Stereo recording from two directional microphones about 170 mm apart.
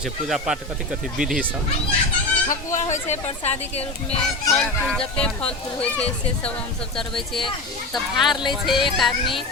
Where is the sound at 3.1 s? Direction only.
40° left (ahead or behind).